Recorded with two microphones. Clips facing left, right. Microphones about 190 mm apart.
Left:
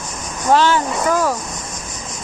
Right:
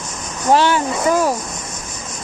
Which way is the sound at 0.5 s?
15° right (ahead or behind).